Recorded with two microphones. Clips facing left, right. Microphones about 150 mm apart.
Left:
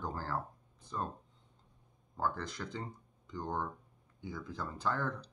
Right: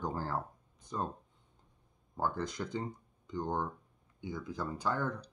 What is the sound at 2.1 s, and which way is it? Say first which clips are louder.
Speech: right 2 dB; 20° right (ahead or behind).